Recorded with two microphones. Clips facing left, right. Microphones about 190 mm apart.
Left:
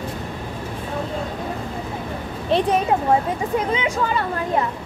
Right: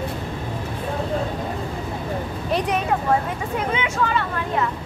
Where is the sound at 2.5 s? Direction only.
25° left (ahead or behind).